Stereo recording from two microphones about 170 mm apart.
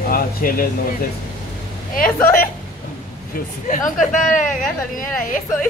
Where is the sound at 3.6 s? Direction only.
45° left (ahead or behind).